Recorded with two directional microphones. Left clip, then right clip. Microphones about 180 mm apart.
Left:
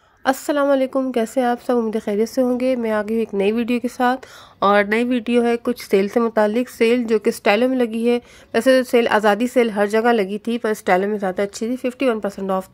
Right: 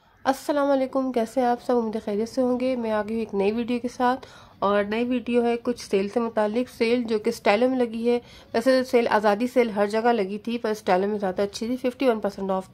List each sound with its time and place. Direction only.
0.2 s a woman's voice: 25° left (ahead or behind)